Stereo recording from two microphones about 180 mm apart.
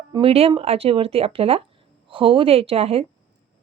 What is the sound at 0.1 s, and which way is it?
A woman's voice, 30° right (ahead or behind).